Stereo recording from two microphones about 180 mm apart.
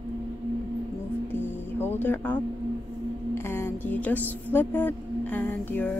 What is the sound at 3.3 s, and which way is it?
A woman's voice, 15° left (ahead or behind).